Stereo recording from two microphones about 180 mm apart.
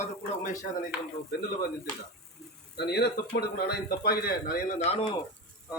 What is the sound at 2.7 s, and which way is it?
Speech, 65° left (ahead or behind).